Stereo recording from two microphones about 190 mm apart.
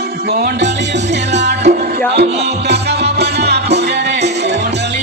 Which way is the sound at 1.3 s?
65° right (ahead or behind).